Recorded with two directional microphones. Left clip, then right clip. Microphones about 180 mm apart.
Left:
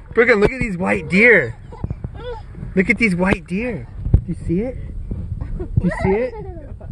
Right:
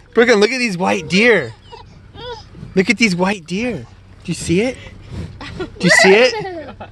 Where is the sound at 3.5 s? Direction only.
45° right (ahead or behind).